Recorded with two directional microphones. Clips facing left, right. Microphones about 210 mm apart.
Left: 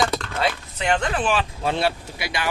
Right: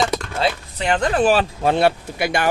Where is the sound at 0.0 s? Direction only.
30° right (ahead or behind).